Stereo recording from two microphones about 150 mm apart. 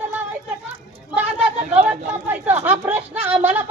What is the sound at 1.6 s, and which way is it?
Speech, 45° right (ahead or behind).